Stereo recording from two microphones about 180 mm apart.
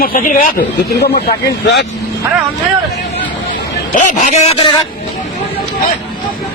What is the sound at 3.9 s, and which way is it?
Speech, 45° left (ahead or behind).